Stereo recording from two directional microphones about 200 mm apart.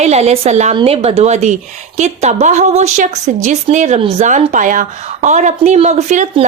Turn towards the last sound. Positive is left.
turn(degrees=-35)  # may be behind; listen again after turning